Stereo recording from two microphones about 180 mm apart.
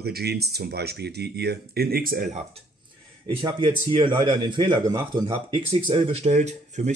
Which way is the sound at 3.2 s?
25° right (ahead or behind).